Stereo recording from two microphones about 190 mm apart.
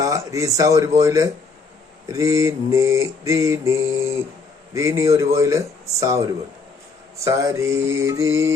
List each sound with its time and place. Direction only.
0.0 s speech: 15° right (ahead or behind)
0.9 s mantra: 15° right (ahead or behind)
7.3 s mantra: 15° right (ahead or behind)